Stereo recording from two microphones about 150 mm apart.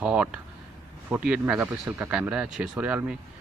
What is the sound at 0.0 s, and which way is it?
Speech, 10° right (ahead or behind).